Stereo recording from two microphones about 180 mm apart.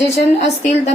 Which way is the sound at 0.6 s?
40° left (ahead or behind).